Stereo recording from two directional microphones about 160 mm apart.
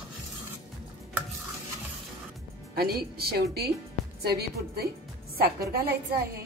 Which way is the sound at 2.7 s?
75° right (ahead or behind).